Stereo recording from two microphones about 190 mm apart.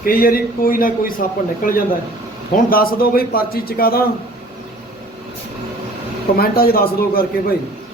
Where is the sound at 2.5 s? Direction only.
50° left (ahead or behind).